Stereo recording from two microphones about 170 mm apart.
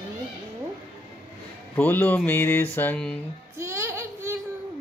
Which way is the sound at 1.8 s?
10° left (ahead or behind).